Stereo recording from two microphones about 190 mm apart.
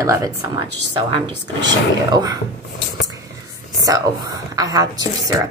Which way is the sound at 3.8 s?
20° right (ahead or behind).